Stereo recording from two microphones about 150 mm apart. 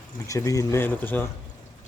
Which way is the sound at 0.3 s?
20° left (ahead or behind).